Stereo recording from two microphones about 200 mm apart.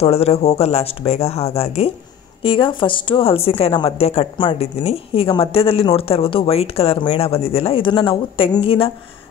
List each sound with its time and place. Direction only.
0.0 s speech: 30° left (ahead or behind)